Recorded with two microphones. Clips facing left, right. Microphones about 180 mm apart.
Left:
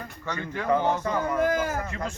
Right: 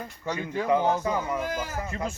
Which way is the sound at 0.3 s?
10° right (ahead or behind).